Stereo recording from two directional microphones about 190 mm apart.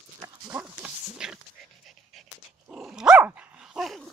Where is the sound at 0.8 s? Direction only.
5° right (ahead or behind).